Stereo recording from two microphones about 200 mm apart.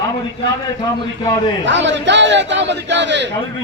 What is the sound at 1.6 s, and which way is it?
A man's voice, 65° right (ahead or behind).